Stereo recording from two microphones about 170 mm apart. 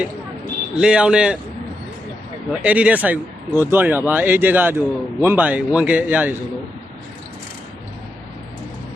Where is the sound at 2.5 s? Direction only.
5° right (ahead or behind).